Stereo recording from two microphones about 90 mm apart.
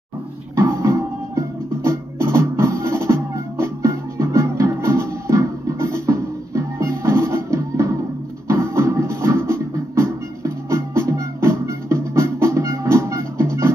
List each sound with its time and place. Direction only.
0.6 s music: 35° right (ahead or behind)